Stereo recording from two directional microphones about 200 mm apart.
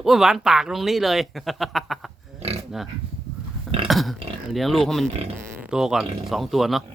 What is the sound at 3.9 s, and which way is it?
Speech, centre (ahead or behind).